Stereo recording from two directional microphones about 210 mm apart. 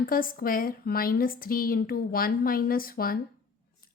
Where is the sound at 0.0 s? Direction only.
45° left (ahead or behind).